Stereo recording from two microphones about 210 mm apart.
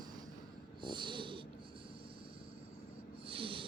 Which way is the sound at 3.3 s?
25° right (ahead or behind).